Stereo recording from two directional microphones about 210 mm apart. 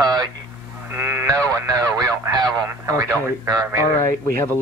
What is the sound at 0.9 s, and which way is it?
Sheep, 10° right (ahead or behind).